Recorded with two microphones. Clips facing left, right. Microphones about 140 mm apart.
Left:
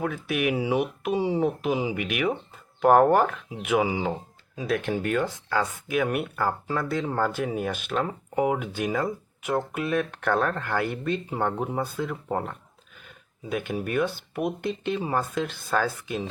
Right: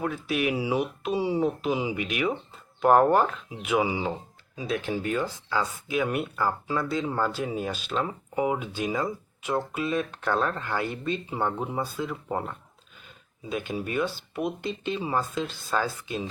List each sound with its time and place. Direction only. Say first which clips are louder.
0.0 s speech: left 1 dB; 60° left (ahead or behind)